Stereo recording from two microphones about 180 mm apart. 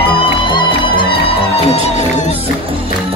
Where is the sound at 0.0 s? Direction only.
30° left (ahead or behind).